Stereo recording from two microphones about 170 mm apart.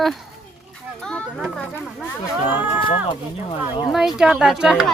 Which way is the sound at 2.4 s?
10° right (ahead or behind).